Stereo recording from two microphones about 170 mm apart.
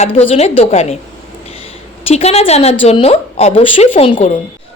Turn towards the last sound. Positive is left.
turn(degrees=35)  # may be behind; listen again after turning